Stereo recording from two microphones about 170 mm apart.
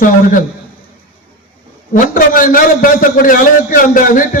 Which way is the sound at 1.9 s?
55° left (ahead or behind).